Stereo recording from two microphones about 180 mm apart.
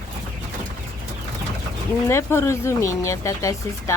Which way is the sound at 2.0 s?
15° left (ahead or behind).